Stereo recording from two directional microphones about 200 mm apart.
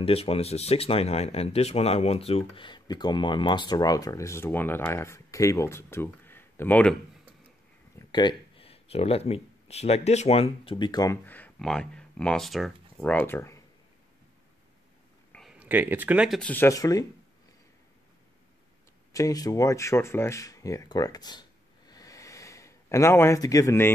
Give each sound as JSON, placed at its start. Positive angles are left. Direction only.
{"t": 0.0, "sound": "speech", "side_deg": 30}
{"t": 8.1, "sound": "speech", "side_deg": 20}
{"t": 15.3, "sound": "speech", "side_deg": -5}
{"t": 19.1, "sound": "speech", "side_deg": 15}